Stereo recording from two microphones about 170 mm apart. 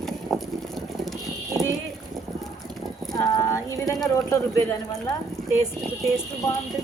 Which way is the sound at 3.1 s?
20° left (ahead or behind).